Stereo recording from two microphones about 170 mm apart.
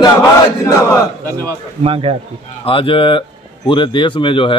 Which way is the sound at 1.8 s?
30° right (ahead or behind).